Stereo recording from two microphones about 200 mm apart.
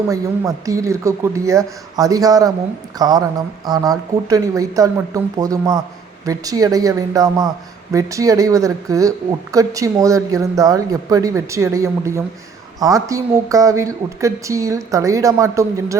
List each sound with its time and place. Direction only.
0.1 s speech: 15° right (ahead or behind)